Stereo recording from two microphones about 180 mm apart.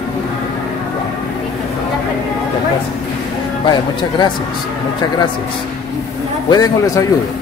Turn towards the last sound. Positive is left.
turn(degrees=20)  # may be behind; listen again after turning